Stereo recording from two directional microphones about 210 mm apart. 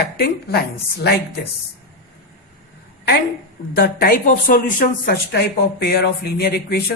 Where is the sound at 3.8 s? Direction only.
45° left (ahead or behind).